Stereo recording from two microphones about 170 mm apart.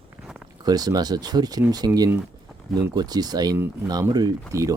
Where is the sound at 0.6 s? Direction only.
20° right (ahead or behind).